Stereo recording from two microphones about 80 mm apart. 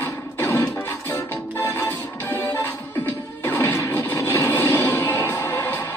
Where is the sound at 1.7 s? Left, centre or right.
Left.